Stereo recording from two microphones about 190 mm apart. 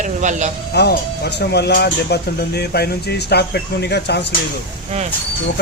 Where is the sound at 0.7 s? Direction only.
60° left (ahead or behind).